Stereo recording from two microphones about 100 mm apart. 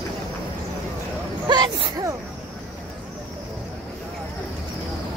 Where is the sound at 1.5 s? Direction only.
45° right (ahead or behind).